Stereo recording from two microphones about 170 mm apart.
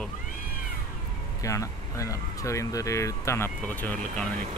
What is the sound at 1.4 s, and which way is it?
Speech, 20° left (ahead or behind).